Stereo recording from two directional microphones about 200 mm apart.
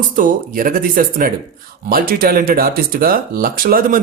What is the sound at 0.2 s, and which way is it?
Speech, 45° right (ahead or behind).